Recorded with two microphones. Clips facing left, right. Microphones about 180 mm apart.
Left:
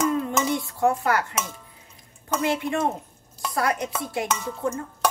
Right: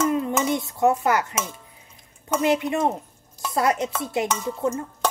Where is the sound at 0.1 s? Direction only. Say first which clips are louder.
Right 2 dB; 20° right (ahead or behind).